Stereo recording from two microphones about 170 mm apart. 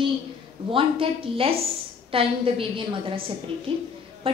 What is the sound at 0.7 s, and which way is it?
A woman's voice, 30° right (ahead or behind).